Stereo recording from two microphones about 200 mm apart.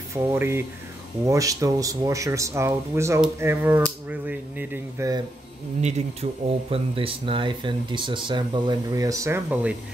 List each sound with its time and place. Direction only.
0.1 s speech: 10° right (ahead or behind)
5.8 s speech: 35° right (ahead or behind); by 9.8 s 10° right (ahead or behind)